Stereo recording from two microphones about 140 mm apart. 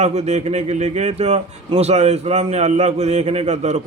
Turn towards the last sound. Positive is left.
turn(degrees=-55)  # may be behind; listen again after turning